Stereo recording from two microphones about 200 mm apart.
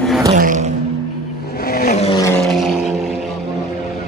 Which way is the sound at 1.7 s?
45° left (ahead or behind).